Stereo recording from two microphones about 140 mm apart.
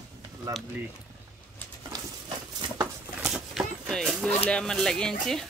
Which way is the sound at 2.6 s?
30° right (ahead or behind).